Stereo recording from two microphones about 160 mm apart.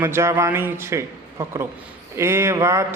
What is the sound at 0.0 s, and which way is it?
Speech, 15° right (ahead or behind).